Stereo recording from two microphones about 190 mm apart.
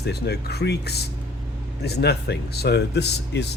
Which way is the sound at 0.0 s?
60° left (ahead or behind).